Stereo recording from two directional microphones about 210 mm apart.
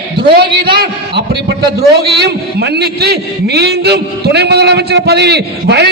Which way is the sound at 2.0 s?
50° right (ahead or behind).